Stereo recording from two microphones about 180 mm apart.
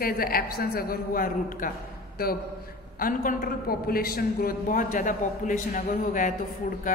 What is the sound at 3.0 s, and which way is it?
A man's voice, 50° left (ahead or behind).